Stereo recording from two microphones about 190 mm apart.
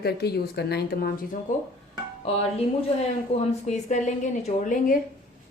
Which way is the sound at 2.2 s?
35° left (ahead or behind).